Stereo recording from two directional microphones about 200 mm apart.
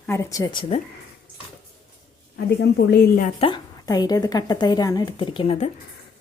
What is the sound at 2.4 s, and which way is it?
Speech, 55° left (ahead or behind).